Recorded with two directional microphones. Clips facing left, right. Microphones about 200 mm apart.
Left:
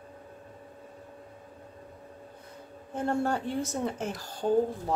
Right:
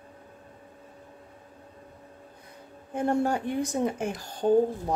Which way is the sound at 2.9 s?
15° right (ahead or behind).